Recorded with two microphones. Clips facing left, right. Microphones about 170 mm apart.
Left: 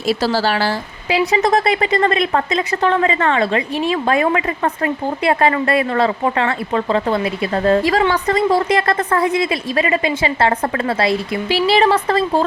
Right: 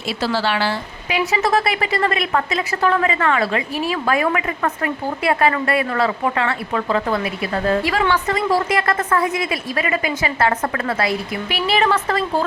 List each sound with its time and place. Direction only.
0.1 s a woman's voice: 40° left (ahead or behind)